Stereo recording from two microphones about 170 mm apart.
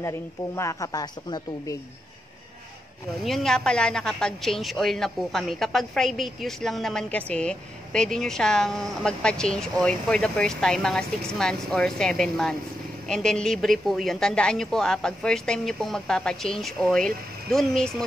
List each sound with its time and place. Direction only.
0.6 s speech: 20° left (ahead or behind)
3.2 s a woman's voice: centre (ahead or behind)